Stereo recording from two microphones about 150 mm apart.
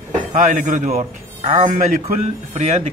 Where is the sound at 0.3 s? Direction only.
60° right (ahead or behind).